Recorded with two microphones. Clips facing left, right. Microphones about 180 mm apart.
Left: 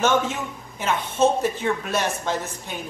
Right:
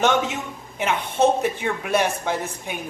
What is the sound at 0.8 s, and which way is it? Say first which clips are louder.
Speech: right 1 dB; 65° right (ahead or behind).